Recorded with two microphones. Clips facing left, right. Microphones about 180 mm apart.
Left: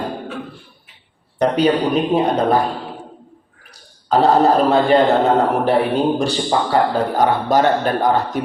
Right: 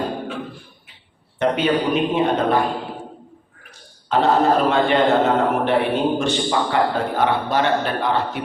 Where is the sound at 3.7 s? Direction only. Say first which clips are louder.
Left 5 dB; 35° left (ahead or behind).